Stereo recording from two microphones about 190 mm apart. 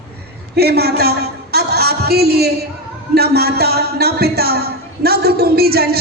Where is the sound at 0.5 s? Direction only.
55° right (ahead or behind).